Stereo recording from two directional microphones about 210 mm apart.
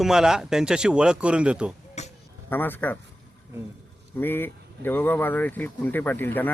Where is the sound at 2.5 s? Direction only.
10° left (ahead or behind).